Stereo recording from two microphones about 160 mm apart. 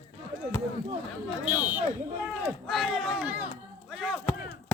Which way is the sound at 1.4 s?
10° right (ahead or behind).